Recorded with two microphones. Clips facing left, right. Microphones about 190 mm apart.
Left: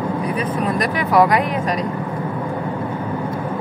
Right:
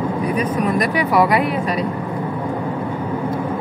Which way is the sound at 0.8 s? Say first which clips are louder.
Left 3 dB; 40° left (ahead or behind).